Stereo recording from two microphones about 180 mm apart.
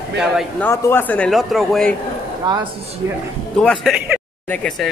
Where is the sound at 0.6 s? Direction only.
10° left (ahead or behind).